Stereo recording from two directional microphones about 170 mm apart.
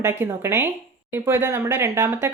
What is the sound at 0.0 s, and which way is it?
Speech, 15° right (ahead or behind).